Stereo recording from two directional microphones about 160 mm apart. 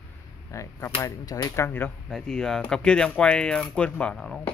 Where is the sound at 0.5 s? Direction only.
20° left (ahead or behind).